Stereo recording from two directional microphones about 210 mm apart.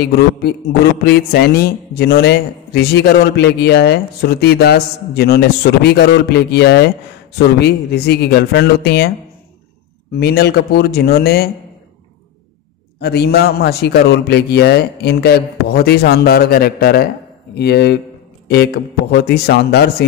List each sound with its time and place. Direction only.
0.0 s a man's voice: 50° left (ahead or behind)
10.1 s a man's voice: 50° left (ahead or behind)
13.0 s a man's voice: 50° left (ahead or behind)